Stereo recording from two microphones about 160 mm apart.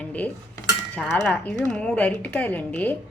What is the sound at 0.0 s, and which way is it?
Cutlery, 10° left (ahead or behind).